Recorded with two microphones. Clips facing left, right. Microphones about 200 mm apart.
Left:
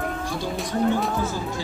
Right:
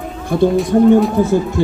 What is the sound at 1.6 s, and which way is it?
Speech, 60° right (ahead or behind).